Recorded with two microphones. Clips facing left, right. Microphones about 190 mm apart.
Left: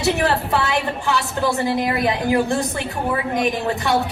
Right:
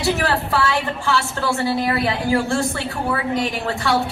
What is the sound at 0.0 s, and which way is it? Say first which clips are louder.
A woman's voice: left 1 dB; 20° left (ahead or behind).